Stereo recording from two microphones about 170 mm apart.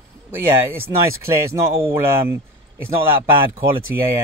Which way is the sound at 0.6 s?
15° right (ahead or behind).